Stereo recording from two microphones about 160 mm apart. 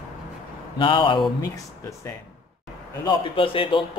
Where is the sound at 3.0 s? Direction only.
35° left (ahead or behind).